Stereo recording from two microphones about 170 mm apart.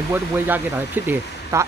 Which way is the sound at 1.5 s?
15° right (ahead or behind).